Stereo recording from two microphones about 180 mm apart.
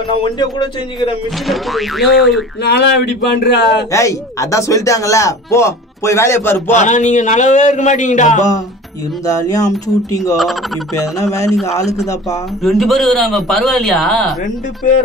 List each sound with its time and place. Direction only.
0.2 s a man's voice: 25° left (ahead or behind)
1.5 s a man's voice: centre (ahead or behind)
2.6 s a man's voice: 70° left (ahead or behind)
3.9 s a man's voice: 15° left (ahead or behind)
6.7 s speech: 40° left (ahead or behind)
9.2 s a man's voice: 20° left (ahead or behind)
10.3 s a man's voice: centre (ahead or behind)
11.1 s a man's voice: 15° left (ahead or behind)
11.7 s speech: 40° left (ahead or behind)
12.6 s a man's voice: centre (ahead or behind)